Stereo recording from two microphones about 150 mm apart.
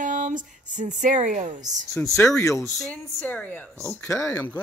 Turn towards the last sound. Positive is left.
turn(degrees=15)  # may be behind; listen again after turning